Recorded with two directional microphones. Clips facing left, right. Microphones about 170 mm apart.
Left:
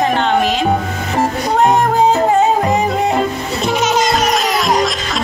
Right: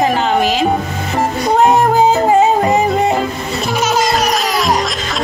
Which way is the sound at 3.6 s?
20° left (ahead or behind).